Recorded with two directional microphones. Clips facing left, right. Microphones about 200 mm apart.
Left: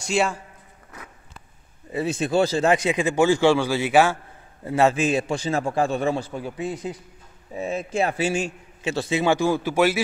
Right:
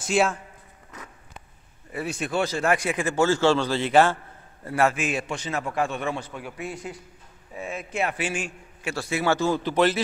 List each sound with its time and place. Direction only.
0.0 s speech: centre (ahead or behind)
1.9 s a man's voice: 25° left (ahead or behind); by 4.2 s 10° left (ahead or behind)
4.6 s a man's voice: 25° left (ahead or behind); by 10.0 s 10° left (ahead or behind)